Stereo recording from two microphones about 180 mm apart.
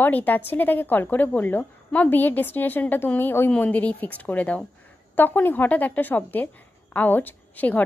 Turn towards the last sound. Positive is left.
turn(degrees=10)  # may be behind; listen again after turning